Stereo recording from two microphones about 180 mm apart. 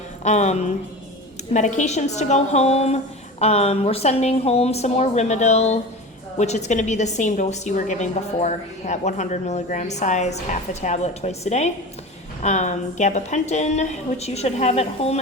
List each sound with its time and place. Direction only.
0.3 s a woman's voice: 40° left (ahead or behind)